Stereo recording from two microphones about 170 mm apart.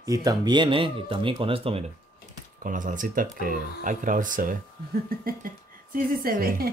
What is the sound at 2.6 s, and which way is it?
Speech, 50° right (ahead or behind).